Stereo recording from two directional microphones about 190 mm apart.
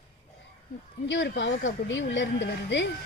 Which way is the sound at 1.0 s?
70° left (ahead or behind).